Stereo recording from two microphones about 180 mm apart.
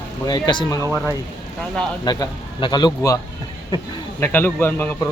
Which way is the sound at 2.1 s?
25° left (ahead or behind).